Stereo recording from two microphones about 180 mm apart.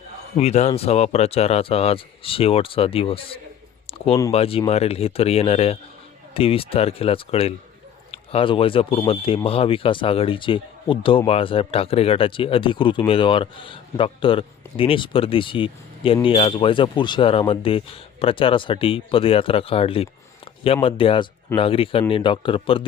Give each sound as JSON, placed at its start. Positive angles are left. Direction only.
{"t": 0.3, "sound": "speech", "side_deg": 40}
{"t": 3.8, "sound": "a sound", "side_deg": 30}
{"t": 4.3, "sound": "speech", "side_deg": 30}